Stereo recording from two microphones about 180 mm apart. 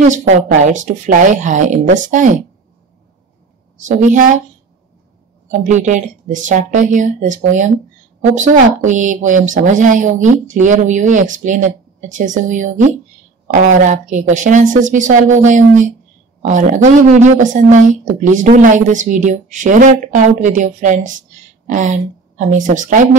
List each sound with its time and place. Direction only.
0.7 s a woman's voice: 45° right (ahead or behind)
3.8 s a woman's voice: 45° right (ahead or behind)
5.5 s a woman's voice: 45° right (ahead or behind)